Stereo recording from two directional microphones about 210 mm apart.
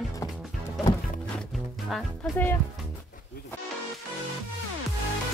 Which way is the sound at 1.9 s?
5° left (ahead or behind).